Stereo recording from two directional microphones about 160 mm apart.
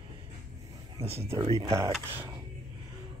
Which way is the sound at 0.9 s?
40° right (ahead or behind).